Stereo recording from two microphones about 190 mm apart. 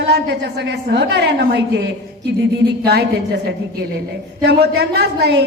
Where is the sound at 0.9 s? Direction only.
65° right (ahead or behind).